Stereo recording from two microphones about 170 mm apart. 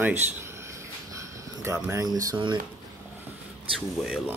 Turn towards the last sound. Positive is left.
turn(degrees=-5)  # may be behind; listen again after turning